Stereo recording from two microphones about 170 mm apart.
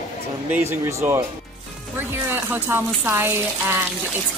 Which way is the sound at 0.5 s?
15° right (ahead or behind).